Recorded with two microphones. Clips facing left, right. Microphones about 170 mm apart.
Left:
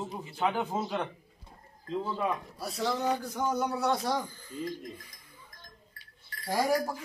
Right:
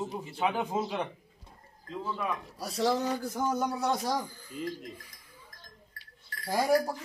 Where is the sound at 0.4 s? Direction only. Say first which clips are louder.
Even; 10° right (ahead or behind).